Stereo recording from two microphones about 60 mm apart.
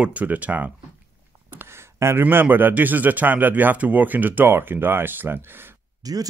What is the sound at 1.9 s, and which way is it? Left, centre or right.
Speech, right.